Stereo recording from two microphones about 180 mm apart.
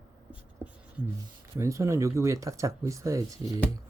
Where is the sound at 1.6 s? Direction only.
15° right (ahead or behind).